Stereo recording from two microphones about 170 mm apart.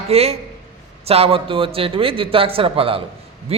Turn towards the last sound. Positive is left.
turn(degrees=-35)  # may be behind; listen again after turning